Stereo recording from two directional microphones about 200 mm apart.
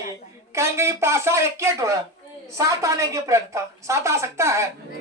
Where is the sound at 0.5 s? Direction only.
15° right (ahead or behind).